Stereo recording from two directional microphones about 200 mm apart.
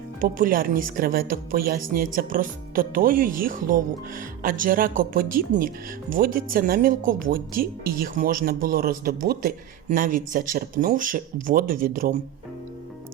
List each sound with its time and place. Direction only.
0.2 s speech: 45° right (ahead or behind)